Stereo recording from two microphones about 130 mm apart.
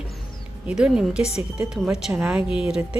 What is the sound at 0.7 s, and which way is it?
A woman's voice, 5° right (ahead or behind).